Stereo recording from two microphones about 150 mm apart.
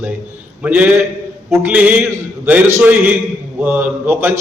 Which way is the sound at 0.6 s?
10° right (ahead or behind).